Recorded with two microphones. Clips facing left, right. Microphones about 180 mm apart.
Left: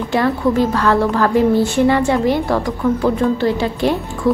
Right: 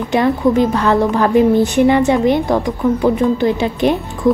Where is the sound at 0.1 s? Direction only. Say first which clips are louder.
Right 3 dB; 20° right (ahead or behind).